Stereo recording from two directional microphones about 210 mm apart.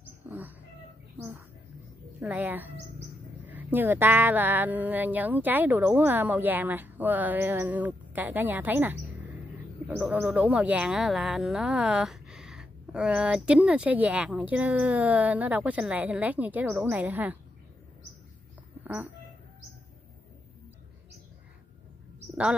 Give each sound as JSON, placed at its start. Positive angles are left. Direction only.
{"t": 0.3, "sound": "a sound", "side_deg": -10}
{"t": 1.1, "sound": "bird", "side_deg": -10}
{"t": 2.1, "sound": "speech", "side_deg": -5}